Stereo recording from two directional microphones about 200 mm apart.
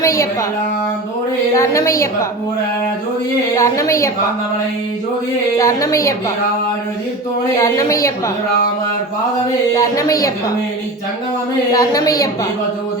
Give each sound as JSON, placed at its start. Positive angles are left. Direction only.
{"t": 0.0, "sound": "speech", "side_deg": 15}
{"t": 1.5, "sound": "a woman's voice", "side_deg": 15}
{"t": 3.5, "sound": "a woman's voice", "side_deg": 15}
{"t": 5.5, "sound": "a woman's voice", "side_deg": 15}
{"t": 7.6, "sound": "a woman's voice", "side_deg": 15}
{"t": 9.7, "sound": "a woman's voice", "side_deg": 15}
{"t": 11.7, "sound": "a woman's voice", "side_deg": 20}